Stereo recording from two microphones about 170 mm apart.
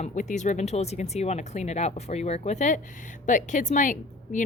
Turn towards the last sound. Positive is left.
turn(degrees=50)  # may be behind; listen again after turning